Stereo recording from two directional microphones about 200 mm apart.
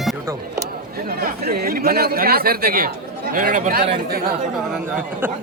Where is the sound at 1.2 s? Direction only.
50° right (ahead or behind).